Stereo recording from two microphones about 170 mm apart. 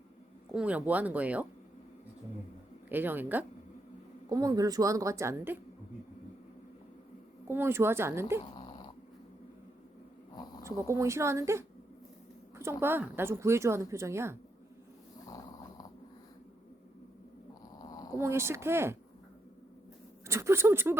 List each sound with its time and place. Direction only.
0.5 s speech: 10° right (ahead or behind)
2.9 s speech: 10° right (ahead or behind)
4.3 s a woman's voice: 20° right (ahead or behind)
7.4 s speech: 15° right (ahead or behind)
8.4 s dog: 30° left (ahead or behind)
10.9 s speech: 15° right (ahead or behind)
15.3 s dog: 20° left (ahead or behind)
17.7 s a sound: 20° left (ahead or behind)
18.2 s speech: 15° right (ahead or behind)
20.2 s speech: 15° right (ahead or behind)